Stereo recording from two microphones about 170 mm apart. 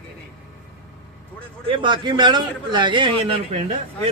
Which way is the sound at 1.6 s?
30° right (ahead or behind).